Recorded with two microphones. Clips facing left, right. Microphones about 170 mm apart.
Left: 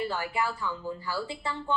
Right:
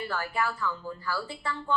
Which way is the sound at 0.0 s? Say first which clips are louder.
Left 1 dB; 20° left (ahead or behind).